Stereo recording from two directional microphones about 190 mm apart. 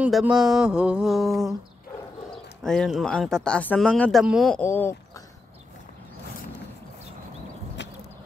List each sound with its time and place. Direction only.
0.0 s speech: 5° right (ahead or behind)
2.6 s speech: centre (ahead or behind)
4.6 s speech: 10° left (ahead or behind)